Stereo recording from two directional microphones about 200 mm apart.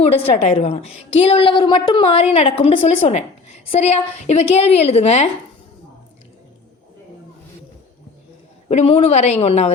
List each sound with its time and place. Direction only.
0.4 s a woman's voice: 30° left (ahead or behind)
8.7 s a woman's voice: 30° left (ahead or behind)